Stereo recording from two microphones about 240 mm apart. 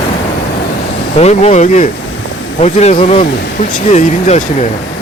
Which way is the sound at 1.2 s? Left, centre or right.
Left.